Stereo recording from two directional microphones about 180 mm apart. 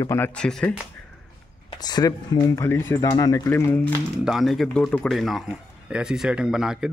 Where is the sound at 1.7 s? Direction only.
20° left (ahead or behind).